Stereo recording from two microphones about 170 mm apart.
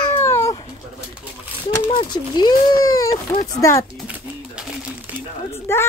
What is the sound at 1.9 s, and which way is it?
Speech, 25° left (ahead or behind).